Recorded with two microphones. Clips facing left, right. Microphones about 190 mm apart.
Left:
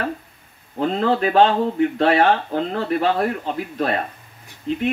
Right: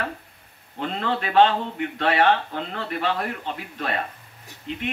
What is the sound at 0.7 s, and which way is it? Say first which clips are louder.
Speech: left 7 dB; 40° left (ahead or behind).